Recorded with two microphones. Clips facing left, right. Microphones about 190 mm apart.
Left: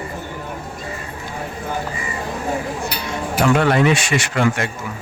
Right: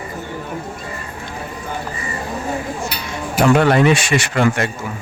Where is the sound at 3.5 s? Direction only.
40° right (ahead or behind).